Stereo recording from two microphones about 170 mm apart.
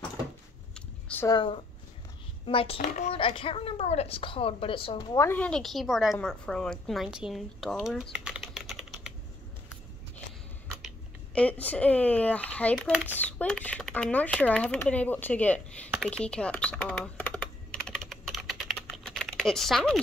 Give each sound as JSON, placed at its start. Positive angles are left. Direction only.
{"t": 0.7, "sound": "a sound", "side_deg": 5}
{"t": 1.2, "sound": "a woman's voice", "side_deg": 25}
{"t": 5.1, "sound": "speech", "side_deg": 15}
{"t": 5.4, "sound": "speech", "side_deg": 5}
{"t": 11.3, "sound": "speech", "side_deg": 10}
{"t": 16.1, "sound": "computer keyboard", "side_deg": 5}
{"t": 18.9, "sound": "typing", "side_deg": 5}